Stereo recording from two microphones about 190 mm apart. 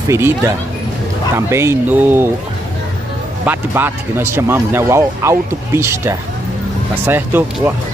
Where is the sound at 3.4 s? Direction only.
10° right (ahead or behind).